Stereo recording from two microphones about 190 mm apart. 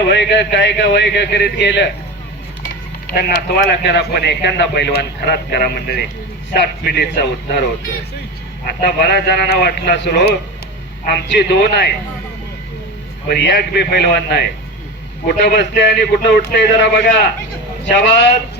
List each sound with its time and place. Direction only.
0.1 s speech: 65° left (ahead or behind)
2.6 s speech: 55° left (ahead or behind)
8.6 s speech: 65° left (ahead or behind)
13.3 s speech: 60° left (ahead or behind)